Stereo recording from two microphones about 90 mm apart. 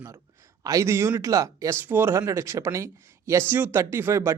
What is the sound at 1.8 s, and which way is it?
Speech, 25° right (ahead or behind).